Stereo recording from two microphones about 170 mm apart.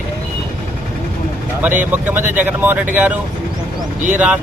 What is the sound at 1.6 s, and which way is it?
Speech, 10° right (ahead or behind).